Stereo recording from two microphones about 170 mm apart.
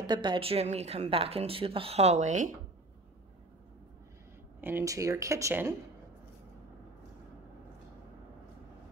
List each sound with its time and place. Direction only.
0.0 s a woman's voice: 25° right (ahead or behind); by 2.5 s 45° right (ahead or behind)
4.6 s speech: 10° right (ahead or behind)